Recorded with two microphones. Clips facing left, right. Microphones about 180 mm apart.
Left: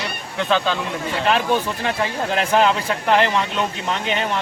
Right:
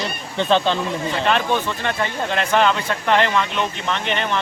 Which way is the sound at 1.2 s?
5° left (ahead or behind).